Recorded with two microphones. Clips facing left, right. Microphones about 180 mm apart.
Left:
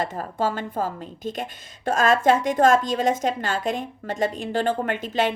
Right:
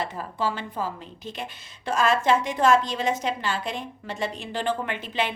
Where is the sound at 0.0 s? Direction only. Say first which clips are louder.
Left 3 dB; 45° left (ahead or behind).